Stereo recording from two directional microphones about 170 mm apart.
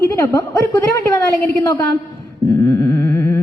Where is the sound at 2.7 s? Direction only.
15° left (ahead or behind).